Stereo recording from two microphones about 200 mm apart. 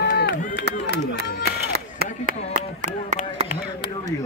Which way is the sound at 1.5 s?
50° right (ahead or behind).